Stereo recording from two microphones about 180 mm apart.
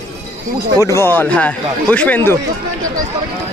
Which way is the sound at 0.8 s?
15° left (ahead or behind).